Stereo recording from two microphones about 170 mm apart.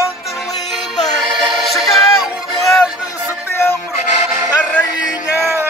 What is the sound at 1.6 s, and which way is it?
Music, centre (ahead or behind).